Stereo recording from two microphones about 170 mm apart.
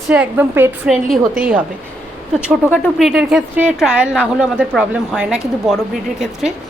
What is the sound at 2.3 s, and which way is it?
A woman's voice, 5° right (ahead or behind).